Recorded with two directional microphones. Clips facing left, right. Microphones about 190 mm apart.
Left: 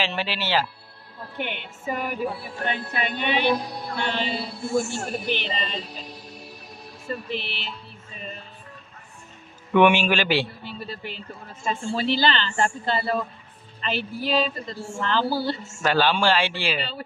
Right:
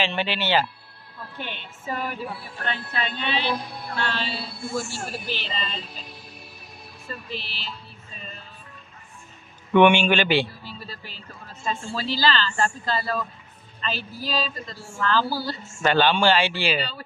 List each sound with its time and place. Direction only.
0.0 s speech: centre (ahead or behind)
1.4 s a woman's voice: 15° left (ahead or behind)
4.7 s a sound: 20° left (ahead or behind)
5.4 s a woman's voice: 20° left (ahead or behind)
7.2 s speech: 60° left (ahead or behind)
9.8 s speech: 5° left (ahead or behind)
10.6 s speech: 60° left (ahead or behind)
11.6 s a sound: 20° left (ahead or behind)
13.9 s speech: 60° left (ahead or behind)
14.3 s a sound: 25° left (ahead or behind)
15.8 s speech: 5° left (ahead or behind)